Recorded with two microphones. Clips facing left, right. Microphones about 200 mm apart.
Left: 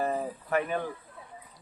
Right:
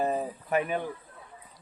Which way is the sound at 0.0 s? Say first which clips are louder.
Right 1 dB; 20° right (ahead or behind).